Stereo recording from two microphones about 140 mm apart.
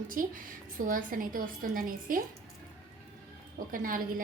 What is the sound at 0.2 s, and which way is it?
A woman's voice, 75° right (ahead or behind).